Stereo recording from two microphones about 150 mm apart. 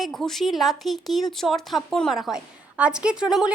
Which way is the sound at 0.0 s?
Centre (ahead or behind).